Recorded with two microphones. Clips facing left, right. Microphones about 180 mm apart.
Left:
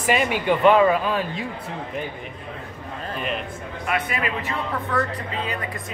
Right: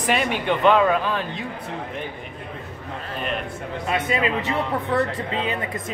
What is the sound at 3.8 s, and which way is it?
Speech, 25° right (ahead or behind).